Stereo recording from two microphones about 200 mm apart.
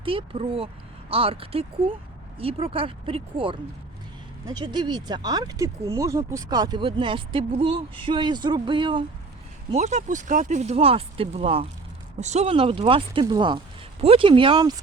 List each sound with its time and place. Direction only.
0.0 s speech: 25° right (ahead or behind)
9.7 s speech: 35° right (ahead or behind)